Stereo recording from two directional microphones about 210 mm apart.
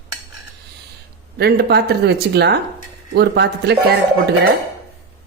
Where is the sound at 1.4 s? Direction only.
50° right (ahead or behind).